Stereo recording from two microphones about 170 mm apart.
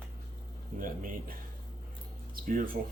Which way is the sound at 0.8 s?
55° right (ahead or behind).